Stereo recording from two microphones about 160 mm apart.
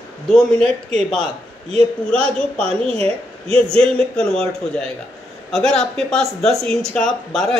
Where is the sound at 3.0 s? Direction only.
35° right (ahead or behind).